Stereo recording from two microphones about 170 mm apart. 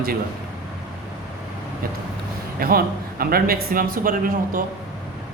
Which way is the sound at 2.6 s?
60° right (ahead or behind).